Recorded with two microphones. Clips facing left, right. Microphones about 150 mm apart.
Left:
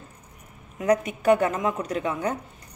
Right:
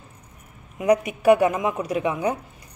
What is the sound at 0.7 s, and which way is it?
A woman's voice, 10° right (ahead or behind).